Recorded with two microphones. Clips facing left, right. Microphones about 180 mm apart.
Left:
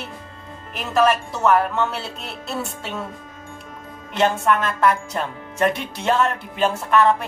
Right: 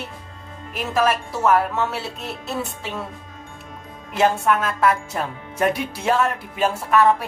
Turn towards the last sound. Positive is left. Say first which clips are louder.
# even
turn(degrees=-5)  # may be behind; listen again after turning